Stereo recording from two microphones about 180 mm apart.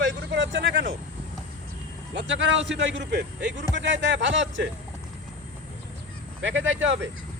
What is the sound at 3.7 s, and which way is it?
Speech, 90° right.